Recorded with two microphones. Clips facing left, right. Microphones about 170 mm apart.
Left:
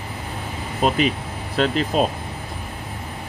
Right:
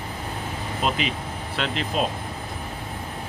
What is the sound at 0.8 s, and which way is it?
Speech, 45° left (ahead or behind).